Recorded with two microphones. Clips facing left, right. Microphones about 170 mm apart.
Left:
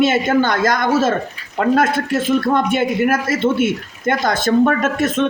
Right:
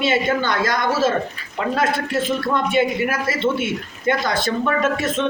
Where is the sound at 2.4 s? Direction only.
45° left (ahead or behind).